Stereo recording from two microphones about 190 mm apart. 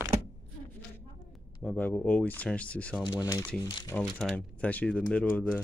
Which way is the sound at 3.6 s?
25° left (ahead or behind).